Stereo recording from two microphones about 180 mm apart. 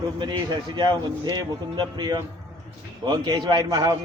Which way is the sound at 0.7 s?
25° right (ahead or behind).